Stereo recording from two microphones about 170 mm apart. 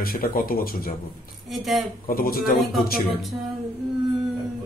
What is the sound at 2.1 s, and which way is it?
Speech, 60° left (ahead or behind).